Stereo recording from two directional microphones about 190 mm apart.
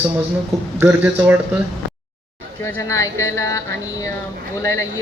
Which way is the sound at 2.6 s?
15° left (ahead or behind).